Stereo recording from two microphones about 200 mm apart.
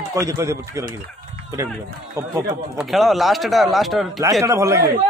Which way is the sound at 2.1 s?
15° right (ahead or behind).